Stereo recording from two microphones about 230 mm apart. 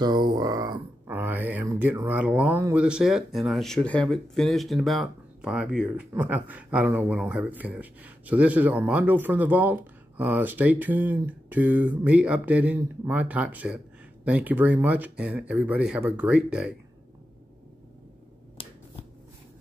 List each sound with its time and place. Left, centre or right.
0.0 s speech: centre
18.6 s shuffling cards: left